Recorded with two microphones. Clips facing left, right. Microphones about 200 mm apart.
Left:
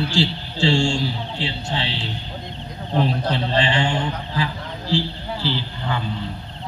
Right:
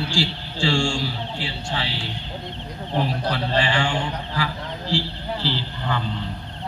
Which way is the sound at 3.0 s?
25° left (ahead or behind).